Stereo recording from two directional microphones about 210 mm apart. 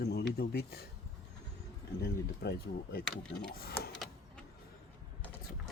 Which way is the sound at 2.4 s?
45° left (ahead or behind).